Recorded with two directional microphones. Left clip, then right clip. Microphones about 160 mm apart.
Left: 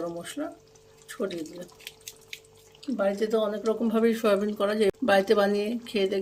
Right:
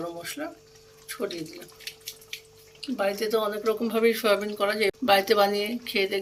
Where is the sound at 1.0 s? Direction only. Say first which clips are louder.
Even; 45° left (ahead or behind).